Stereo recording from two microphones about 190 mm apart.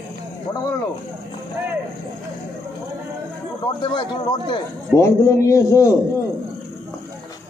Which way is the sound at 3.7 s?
25° left (ahead or behind).